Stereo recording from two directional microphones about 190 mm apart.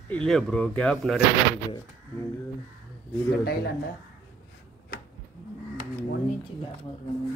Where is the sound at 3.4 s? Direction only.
55° left (ahead or behind).